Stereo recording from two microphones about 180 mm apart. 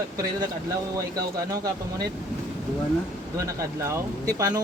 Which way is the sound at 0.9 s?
20° right (ahead or behind).